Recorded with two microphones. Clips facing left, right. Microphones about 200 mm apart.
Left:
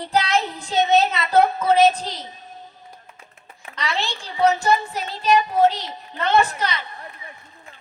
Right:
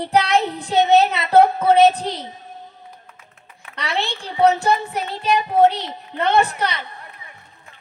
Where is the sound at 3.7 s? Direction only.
60° right (ahead or behind).